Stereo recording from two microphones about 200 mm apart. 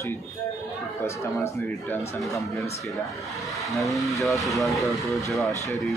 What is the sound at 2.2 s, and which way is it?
Speech, centre (ahead or behind).